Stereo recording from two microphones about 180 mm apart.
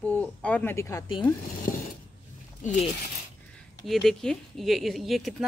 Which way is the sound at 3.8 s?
5° left (ahead or behind).